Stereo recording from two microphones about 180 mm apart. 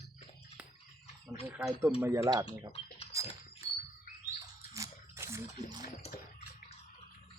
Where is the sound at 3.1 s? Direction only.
20° right (ahead or behind).